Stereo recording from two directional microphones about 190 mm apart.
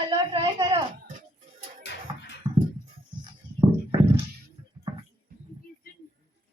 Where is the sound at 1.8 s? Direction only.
65° left (ahead or behind).